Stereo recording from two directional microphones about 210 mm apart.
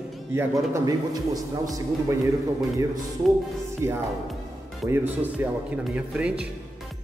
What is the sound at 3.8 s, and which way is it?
Speech, 15° right (ahead or behind).